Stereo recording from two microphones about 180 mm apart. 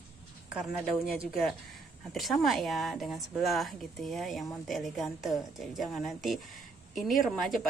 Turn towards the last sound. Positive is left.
turn(degrees=0)  # may be behind; listen again after turning